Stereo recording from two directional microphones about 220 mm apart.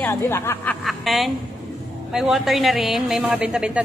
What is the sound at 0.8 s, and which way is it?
A woman's voice, centre (ahead or behind).